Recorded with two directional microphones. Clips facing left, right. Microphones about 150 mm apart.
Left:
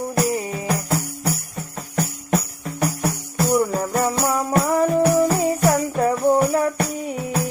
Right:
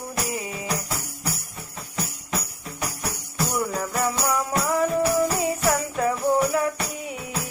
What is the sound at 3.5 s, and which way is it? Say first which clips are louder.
Music: left 6 dB; 30° left (ahead or behind).